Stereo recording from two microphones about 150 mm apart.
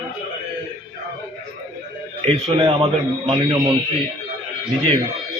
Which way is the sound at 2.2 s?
35° right (ahead or behind).